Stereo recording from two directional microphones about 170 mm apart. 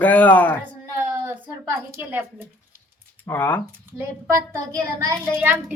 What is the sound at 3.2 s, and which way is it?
Speech, 10° left (ahead or behind).